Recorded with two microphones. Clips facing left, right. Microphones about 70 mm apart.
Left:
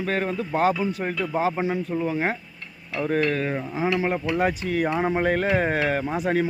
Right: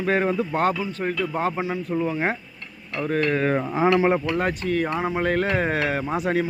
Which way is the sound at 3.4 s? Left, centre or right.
Right.